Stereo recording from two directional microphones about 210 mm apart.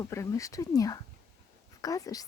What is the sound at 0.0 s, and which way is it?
Speech, 15° left (ahead or behind).